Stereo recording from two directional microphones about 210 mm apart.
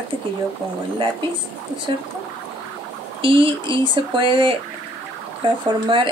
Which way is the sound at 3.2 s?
25° right (ahead or behind).